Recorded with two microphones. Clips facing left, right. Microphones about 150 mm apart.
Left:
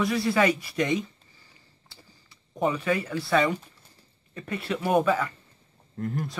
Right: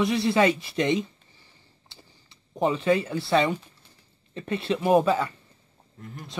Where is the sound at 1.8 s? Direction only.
25° right (ahead or behind).